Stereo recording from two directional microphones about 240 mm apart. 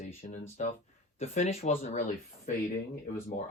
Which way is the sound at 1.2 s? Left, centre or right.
Left.